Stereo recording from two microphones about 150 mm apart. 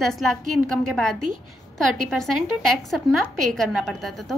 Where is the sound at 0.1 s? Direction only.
Centre (ahead or behind).